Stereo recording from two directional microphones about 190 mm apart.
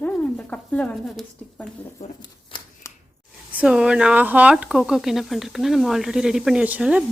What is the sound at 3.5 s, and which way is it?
Speech, 5° right (ahead or behind).